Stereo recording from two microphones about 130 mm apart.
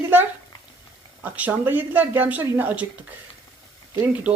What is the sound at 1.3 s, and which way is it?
Speech, 15° right (ahead or behind).